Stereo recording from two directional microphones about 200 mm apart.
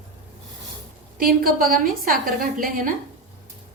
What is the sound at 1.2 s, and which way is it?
A woman's voice, 45° right (ahead or behind).